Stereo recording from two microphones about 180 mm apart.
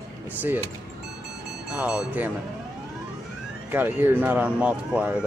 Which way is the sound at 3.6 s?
10° right (ahead or behind).